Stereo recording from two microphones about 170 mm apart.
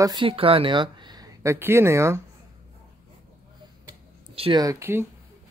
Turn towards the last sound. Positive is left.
turn(degrees=-15)  # may be behind; listen again after turning